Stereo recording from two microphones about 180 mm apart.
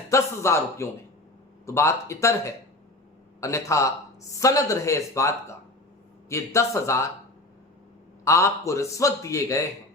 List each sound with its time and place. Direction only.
0.1 s speech: 15° left (ahead or behind)
8.2 s speech: 15° left (ahead or behind)